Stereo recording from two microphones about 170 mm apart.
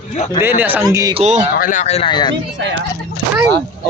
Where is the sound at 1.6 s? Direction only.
45° left (ahead or behind); by 2.4 s 25° left (ahead or behind).